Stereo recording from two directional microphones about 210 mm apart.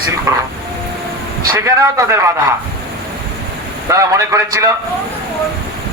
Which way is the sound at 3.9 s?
15° right (ahead or behind).